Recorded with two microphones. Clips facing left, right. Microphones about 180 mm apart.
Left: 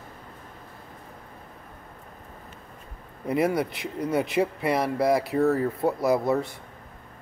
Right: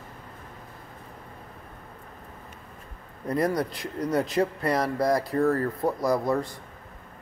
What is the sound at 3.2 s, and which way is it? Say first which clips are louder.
Speech: left 1 dB; 5° left (ahead or behind).